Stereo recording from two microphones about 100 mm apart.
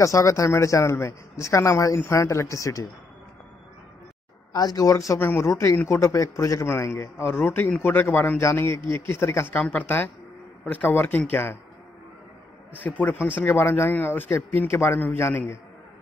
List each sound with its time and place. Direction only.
0.0 s a man's voice: 30° left (ahead or behind)
4.5 s a man's voice: 40° left (ahead or behind)
5.2 s a man's voice: 20° left (ahead or behind)
12.7 s a man's voice: 15° left (ahead or behind)